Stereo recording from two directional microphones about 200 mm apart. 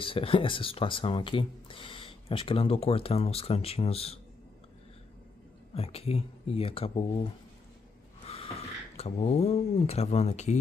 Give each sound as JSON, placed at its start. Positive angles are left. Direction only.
{"t": 0.0, "sound": "speech", "side_deg": 25}
{"t": 5.8, "sound": "speech", "side_deg": 30}
{"t": 8.9, "sound": "speech", "side_deg": 30}